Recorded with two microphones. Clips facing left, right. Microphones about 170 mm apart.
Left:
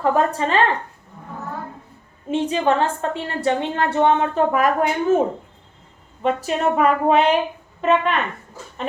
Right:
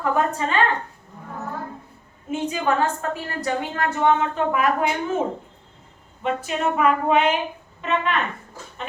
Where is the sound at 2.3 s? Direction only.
30° left (ahead or behind).